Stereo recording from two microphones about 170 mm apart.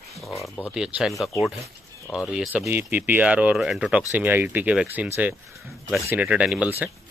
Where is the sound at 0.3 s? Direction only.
20° left (ahead or behind).